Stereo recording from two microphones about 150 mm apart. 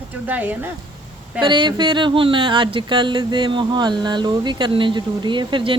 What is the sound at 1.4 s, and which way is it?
Speech, 30° right (ahead or behind).